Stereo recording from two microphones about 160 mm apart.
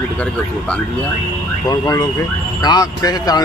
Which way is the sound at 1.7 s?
25° left (ahead or behind).